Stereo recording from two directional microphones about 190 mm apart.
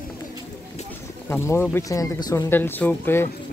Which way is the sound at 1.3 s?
15° left (ahead or behind).